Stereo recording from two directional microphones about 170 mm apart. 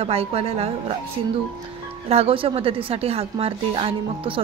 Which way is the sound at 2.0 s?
35° right (ahead or behind).